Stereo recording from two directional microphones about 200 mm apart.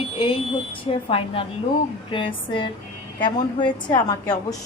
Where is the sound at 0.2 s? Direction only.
25° left (ahead or behind).